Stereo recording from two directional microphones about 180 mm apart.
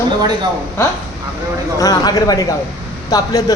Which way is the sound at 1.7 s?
20° left (ahead or behind).